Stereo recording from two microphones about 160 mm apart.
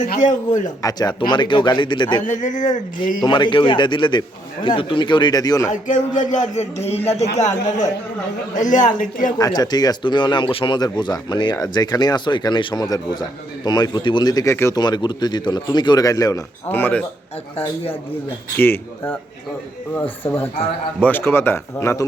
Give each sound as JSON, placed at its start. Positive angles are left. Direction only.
{"t": 0.1, "sound": "speech", "side_deg": 50}
{"t": 0.8, "sound": "speech", "side_deg": 25}
{"t": 2.2, "sound": "speech", "side_deg": 50}
{"t": 3.2, "sound": "speech", "side_deg": 30}
{"t": 5.7, "sound": "speech", "side_deg": 50}
{"t": 9.4, "sound": "speech", "side_deg": 25}
{"t": 18.5, "sound": "speech", "side_deg": 15}